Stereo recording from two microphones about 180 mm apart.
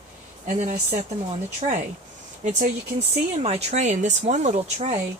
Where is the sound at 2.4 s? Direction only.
40° right (ahead or behind).